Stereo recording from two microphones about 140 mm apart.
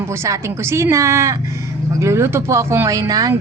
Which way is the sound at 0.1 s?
20° right (ahead or behind).